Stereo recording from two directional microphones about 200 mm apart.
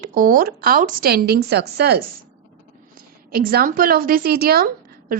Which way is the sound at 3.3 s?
50° right (ahead or behind).